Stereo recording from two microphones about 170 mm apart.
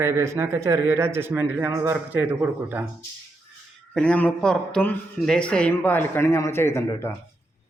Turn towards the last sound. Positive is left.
turn(degrees=15)  # may be behind; listen again after turning